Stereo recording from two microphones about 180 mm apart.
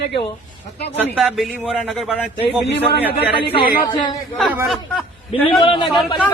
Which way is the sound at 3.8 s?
20° left (ahead or behind).